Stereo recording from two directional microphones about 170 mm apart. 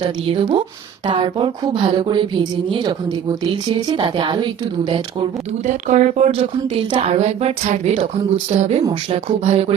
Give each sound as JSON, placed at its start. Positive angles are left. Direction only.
{"t": 0.3, "sound": "speech", "side_deg": -30}
{"t": 5.6, "sound": "speech", "side_deg": -45}
{"t": 8.8, "sound": "speech", "side_deg": -25}
{"t": 9.4, "sound": "speech", "side_deg": -35}